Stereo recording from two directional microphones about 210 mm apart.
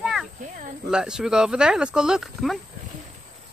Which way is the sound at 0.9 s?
5° right (ahead or behind).